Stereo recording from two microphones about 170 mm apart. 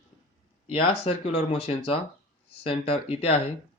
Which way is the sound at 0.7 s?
35° left (ahead or behind).